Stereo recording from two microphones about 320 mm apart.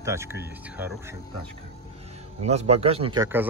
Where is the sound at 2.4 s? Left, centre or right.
Centre.